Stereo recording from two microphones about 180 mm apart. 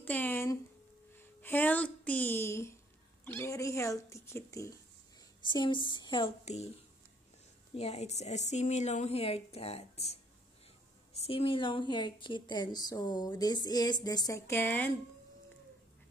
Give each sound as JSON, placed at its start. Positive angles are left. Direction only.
{"t": 0.0, "sound": "a woman's voice", "side_deg": 10}
{"t": 6.4, "sound": "a woman's voice", "side_deg": 40}
{"t": 7.7, "sound": "a woman's voice", "side_deg": 35}
{"t": 11.1, "sound": "a woman's voice", "side_deg": 30}